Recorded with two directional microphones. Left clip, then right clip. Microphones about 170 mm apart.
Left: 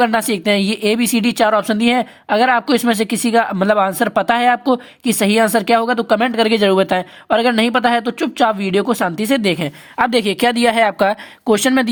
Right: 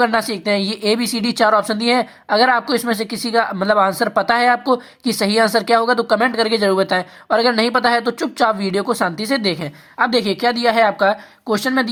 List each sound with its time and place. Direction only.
0.0 s a woman's voice: 25° left (ahead or behind)